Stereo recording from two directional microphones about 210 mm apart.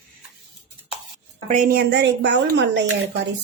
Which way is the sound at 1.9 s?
55° right (ahead or behind).